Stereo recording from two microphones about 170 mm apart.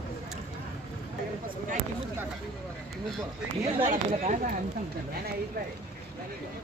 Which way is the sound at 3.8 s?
45° right (ahead or behind).